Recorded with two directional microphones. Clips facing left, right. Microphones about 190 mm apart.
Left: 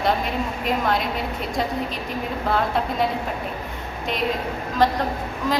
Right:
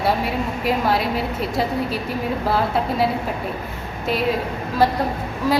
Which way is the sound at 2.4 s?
5° right (ahead or behind).